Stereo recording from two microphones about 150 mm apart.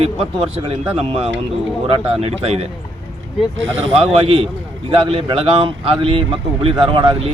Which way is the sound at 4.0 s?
40° right (ahead or behind).